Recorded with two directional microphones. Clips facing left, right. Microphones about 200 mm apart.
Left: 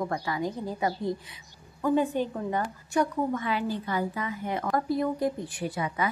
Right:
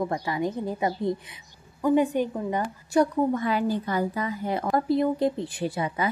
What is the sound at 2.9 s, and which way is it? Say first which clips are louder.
A woman's voice: right 5 dB; 35° right (ahead or behind).